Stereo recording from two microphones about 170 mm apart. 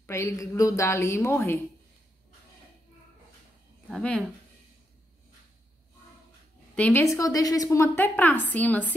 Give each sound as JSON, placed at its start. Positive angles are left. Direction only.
{"t": 0.0, "sound": "a woman's voice", "side_deg": 15}
{"t": 3.9, "sound": "speech", "side_deg": 5}
{"t": 6.7, "sound": "a woman's voice", "side_deg": 10}